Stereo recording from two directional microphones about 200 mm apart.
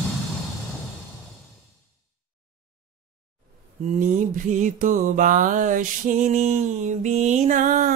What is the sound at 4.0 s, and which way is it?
Music, 35° right (ahead or behind).